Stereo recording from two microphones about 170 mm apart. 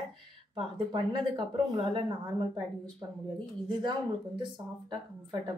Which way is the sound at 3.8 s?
30° right (ahead or behind).